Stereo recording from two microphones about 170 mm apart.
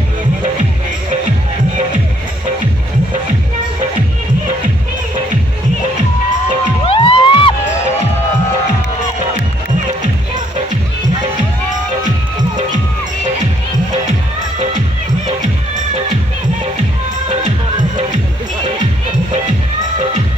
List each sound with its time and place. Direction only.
6.9 s music: 30° left (ahead or behind)